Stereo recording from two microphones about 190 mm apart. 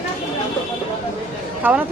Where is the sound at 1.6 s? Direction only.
10° right (ahead or behind).